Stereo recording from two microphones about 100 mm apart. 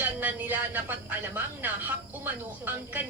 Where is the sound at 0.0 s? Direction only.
15° right (ahead or behind).